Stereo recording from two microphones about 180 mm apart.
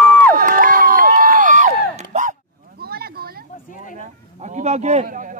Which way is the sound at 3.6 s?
45° left (ahead or behind).